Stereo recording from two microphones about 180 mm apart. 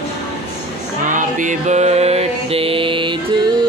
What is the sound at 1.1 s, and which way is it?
Music, 45° right (ahead or behind).